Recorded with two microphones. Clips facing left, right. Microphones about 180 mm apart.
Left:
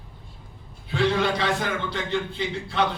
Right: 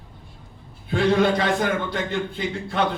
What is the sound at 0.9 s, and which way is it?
A man's voice, 50° right (ahead or behind).